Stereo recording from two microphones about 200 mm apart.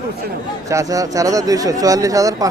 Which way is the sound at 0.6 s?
15° right (ahead or behind).